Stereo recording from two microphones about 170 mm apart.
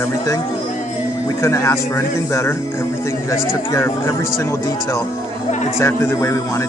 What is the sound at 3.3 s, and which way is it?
Speech, 15° left (ahead or behind).